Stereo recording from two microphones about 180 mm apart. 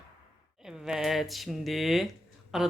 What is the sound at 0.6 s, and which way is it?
A man's voice, 5° right (ahead or behind).